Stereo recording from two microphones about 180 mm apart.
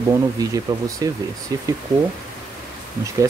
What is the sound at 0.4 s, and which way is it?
Speech, 20° right (ahead or behind).